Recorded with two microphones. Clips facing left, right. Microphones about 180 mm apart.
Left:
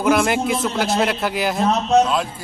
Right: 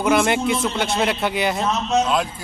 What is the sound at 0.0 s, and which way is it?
A man's voice, centre (ahead or behind).